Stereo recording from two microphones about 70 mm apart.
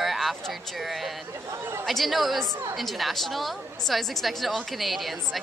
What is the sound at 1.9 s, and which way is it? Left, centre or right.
A woman's voice, centre.